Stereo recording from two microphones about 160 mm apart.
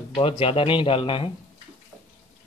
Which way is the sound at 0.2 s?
30° left (ahead or behind).